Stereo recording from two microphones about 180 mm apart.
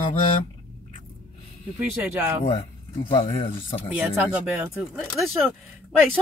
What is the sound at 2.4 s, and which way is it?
Speech, 25° left (ahead or behind).